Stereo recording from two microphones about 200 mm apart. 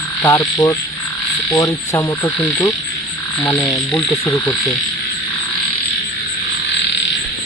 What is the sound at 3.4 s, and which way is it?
Frog, centre (ahead or behind).